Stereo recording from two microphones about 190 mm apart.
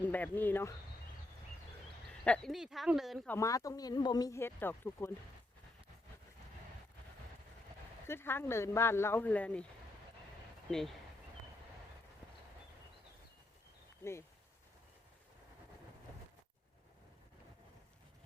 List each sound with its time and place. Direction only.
0.0 s speech: 10° left (ahead or behind)
2.2 s speech: 5° left (ahead or behind)
3.3 s speech: 15° left (ahead or behind)
8.0 s speech: 10° left (ahead or behind)
10.7 s speech: centre (ahead or behind)
14.0 s speech: 15° left (ahead or behind)